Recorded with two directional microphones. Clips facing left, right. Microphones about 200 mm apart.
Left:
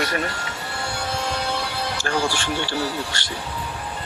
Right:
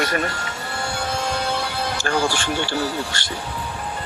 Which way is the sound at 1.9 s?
50° right (ahead or behind).